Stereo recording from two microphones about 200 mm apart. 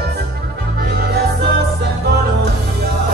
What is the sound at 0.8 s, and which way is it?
Music, 55° right (ahead or behind).